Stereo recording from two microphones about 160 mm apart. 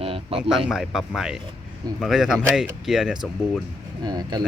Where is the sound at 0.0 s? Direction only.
35° right (ahead or behind).